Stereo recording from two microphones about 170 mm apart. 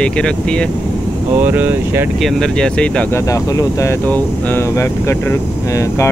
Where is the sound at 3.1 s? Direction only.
20° left (ahead or behind).